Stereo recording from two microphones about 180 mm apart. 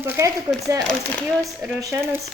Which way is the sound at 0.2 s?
15° right (ahead or behind).